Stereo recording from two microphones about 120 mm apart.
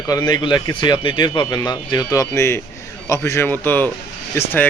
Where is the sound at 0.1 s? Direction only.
35° left (ahead or behind).